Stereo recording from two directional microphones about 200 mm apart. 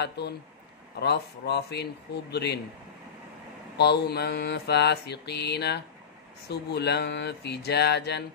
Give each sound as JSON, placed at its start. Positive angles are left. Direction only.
{"t": 0.0, "sound": "mantra", "side_deg": 55}
{"t": 3.7, "sound": "mantra", "side_deg": 55}